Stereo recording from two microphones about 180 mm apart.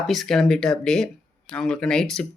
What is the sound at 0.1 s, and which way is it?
A woman's voice, centre (ahead or behind).